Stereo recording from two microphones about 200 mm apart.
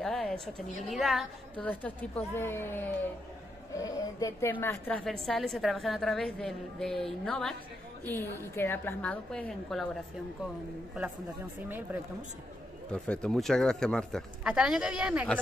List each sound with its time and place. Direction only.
0.0 s a woman's voice: 5° left (ahead or behind)
12.9 s a woman's voice: 5° left (ahead or behind)